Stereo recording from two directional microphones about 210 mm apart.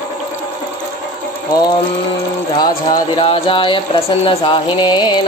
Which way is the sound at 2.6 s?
25° left (ahead or behind).